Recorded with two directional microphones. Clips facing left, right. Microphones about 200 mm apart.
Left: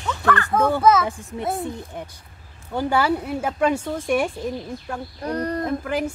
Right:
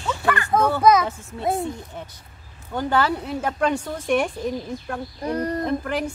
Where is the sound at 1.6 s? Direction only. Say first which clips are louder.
Even; 15° left (ahead or behind).